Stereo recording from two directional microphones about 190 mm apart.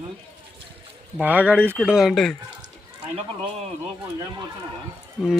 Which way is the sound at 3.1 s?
30° right (ahead or behind).